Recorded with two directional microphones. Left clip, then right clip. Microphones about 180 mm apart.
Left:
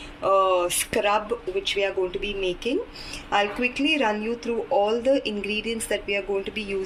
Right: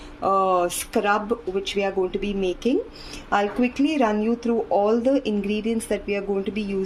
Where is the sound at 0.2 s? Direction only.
65° right (ahead or behind).